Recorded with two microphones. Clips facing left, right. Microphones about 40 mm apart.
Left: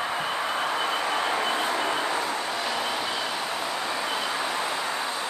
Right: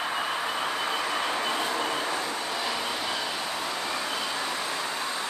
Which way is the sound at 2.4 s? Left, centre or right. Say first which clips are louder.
Left 2 dB; centre.